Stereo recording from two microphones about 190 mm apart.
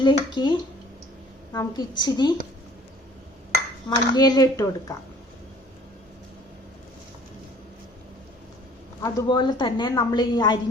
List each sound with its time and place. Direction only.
0.0 s a woman's voice: 25° left (ahead or behind)
3.8 s a woman's voice: 20° left (ahead or behind)
9.0 s a woman's voice: 20° left (ahead or behind)